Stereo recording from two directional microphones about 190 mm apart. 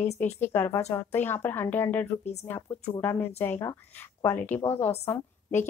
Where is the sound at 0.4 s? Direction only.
10° left (ahead or behind).